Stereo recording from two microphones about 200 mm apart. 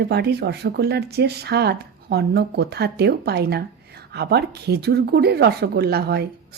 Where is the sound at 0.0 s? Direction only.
55° right (ahead or behind).